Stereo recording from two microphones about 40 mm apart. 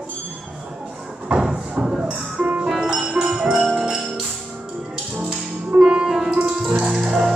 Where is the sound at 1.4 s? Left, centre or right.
Centre.